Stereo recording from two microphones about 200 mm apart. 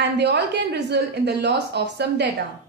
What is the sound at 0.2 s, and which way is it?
A woman's voice, 60° right (ahead or behind).